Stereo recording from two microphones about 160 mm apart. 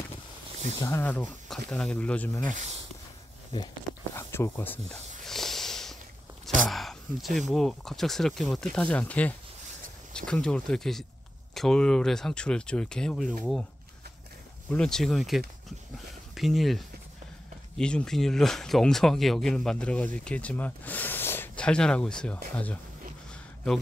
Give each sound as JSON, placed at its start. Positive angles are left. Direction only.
{"t": 0.8, "sound": "speech", "side_deg": 15}
{"t": 2.5, "sound": "speech", "side_deg": -45}
{"t": 4.1, "sound": "a sound", "side_deg": 15}
{"t": 5.2, "sound": "a sound", "side_deg": 0}
{"t": 6.7, "sound": "speech", "side_deg": 0}
{"t": 14.7, "sound": "speech", "side_deg": 5}